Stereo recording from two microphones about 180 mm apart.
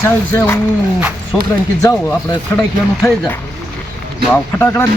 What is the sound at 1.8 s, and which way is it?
Speech, 15° left (ahead or behind).